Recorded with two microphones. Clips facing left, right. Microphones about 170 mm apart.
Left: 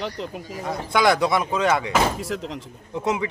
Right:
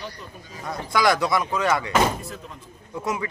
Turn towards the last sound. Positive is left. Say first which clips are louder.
# left 4 dB
turn(degrees=20)  # may be behind; listen again after turning